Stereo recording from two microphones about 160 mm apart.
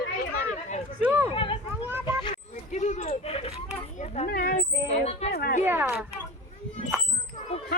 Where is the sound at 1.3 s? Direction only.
35° left (ahead or behind).